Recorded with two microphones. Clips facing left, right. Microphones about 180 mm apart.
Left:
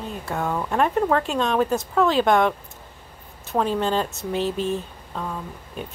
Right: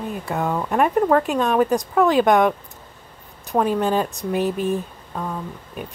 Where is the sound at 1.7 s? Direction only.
15° right (ahead or behind).